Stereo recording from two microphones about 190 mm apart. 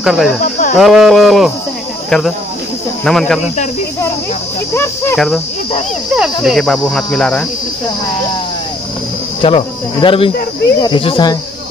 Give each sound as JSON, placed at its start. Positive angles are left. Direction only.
{"t": 0.0, "sound": "speech", "side_deg": 0}
{"t": 0.4, "sound": "a sound", "side_deg": 45}
{"t": 0.7, "sound": "cricket", "side_deg": 0}
{"t": 2.0, "sound": "speech", "side_deg": 0}
{"t": 3.1, "sound": "cricket", "side_deg": 0}
{"t": 5.1, "sound": "cricket", "side_deg": 0}
{"t": 9.4, "sound": "speech", "side_deg": 30}